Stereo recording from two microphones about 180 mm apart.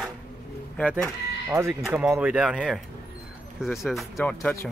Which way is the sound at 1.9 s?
5° right (ahead or behind).